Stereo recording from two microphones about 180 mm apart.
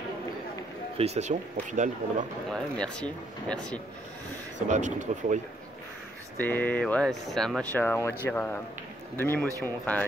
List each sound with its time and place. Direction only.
0.9 s speech: 35° right (ahead or behind)
2.5 s speech: 5° left (ahead or behind)
4.6 s speech: 45° right (ahead or behind)
6.3 s speech: 10° left (ahead or behind)